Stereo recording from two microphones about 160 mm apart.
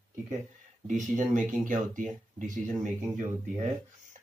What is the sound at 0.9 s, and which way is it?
Speech, 50° right (ahead or behind).